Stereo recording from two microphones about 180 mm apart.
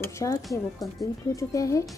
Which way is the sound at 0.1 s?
15° left (ahead or behind).